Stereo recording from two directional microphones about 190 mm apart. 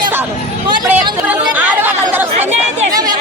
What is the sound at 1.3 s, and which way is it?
Speech, 10° right (ahead or behind).